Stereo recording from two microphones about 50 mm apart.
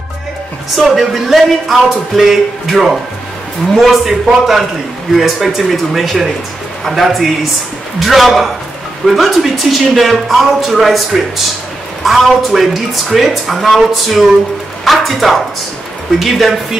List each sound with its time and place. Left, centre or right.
0.8 s a man's voice: centre